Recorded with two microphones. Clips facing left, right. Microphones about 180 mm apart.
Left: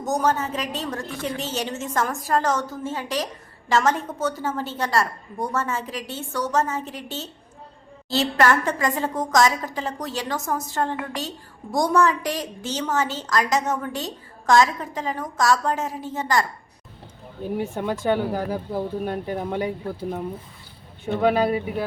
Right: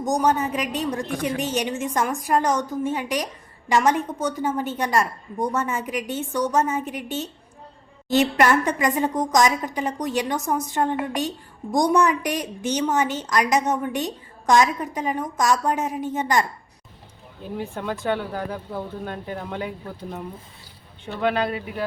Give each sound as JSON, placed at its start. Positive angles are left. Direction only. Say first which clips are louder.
{"t": 0.0, "sound": "a woman's voice", "louder": "right 2 dB", "side_deg": -15}
{"t": 1.0, "sound": "a woman's voice", "louder": "right 3 dB", "side_deg": -45}
{"t": 1.4, "sound": "a woman's voice", "louder": "right 3 dB", "side_deg": -15}
{"t": 17.6, "sound": "speech", "louder": "left 1 dB", "side_deg": 10}
{"t": 21.0, "sound": "speech", "louder": "left 3 dB", "side_deg": 10}